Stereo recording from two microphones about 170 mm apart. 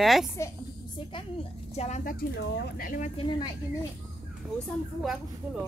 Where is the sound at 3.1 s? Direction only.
30° left (ahead or behind).